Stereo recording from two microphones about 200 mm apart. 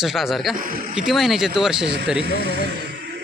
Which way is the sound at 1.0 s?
Centre (ahead or behind).